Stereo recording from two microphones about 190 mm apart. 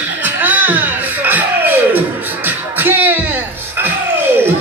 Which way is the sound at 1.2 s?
10° right (ahead or behind).